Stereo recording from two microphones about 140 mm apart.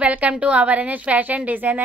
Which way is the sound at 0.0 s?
10° right (ahead or behind).